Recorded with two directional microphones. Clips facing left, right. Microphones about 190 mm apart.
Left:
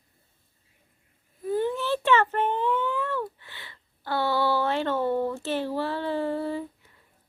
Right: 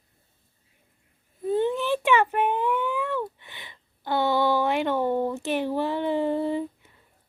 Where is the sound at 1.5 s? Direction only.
20° right (ahead or behind).